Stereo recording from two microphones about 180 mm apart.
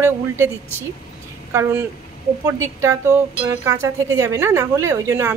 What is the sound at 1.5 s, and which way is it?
Speech, 15° right (ahead or behind).